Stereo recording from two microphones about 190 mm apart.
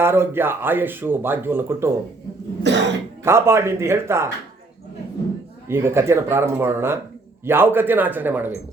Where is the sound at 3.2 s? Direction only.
15° right (ahead or behind).